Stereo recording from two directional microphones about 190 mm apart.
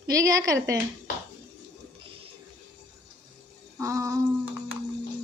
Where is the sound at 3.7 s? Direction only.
15° right (ahead or behind).